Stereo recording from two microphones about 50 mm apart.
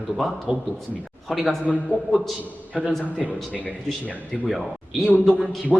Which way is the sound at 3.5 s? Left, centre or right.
Left.